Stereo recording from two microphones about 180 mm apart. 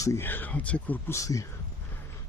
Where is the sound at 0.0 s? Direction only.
15° left (ahead or behind).